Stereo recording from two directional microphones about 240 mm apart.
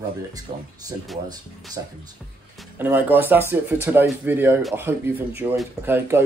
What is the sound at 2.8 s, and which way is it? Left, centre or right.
Speech, centre.